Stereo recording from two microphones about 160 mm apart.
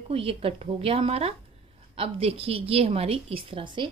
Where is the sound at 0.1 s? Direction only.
35° right (ahead or behind).